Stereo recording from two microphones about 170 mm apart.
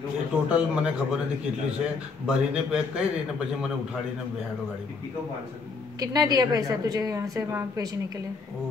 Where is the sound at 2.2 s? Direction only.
5° right (ahead or behind).